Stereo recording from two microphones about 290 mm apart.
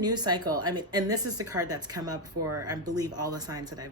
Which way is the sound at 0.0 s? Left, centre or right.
Centre.